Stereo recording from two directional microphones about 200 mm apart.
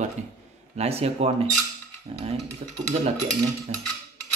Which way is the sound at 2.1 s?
30° right (ahead or behind).